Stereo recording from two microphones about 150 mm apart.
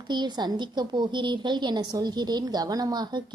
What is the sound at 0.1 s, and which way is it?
A woman's voice, 30° right (ahead or behind).